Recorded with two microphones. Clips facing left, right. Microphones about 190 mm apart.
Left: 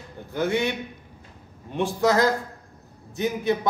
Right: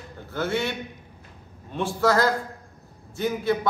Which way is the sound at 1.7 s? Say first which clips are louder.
Left 1 dB; 15° left (ahead or behind).